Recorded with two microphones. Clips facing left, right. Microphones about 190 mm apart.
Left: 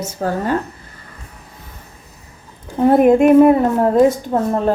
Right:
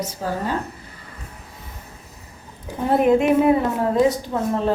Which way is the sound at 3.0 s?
50° left (ahead or behind).